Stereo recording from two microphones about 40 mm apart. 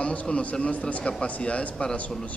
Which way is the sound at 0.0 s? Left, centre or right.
Left.